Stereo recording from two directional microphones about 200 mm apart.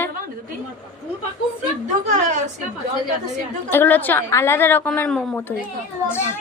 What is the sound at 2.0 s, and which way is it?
Speech, 35° right (ahead or behind).